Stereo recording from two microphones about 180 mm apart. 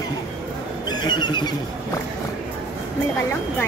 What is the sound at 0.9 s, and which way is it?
Speech, 25° left (ahead or behind).